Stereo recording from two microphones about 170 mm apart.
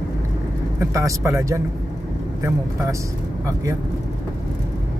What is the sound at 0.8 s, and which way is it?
Speech, 20° right (ahead or behind).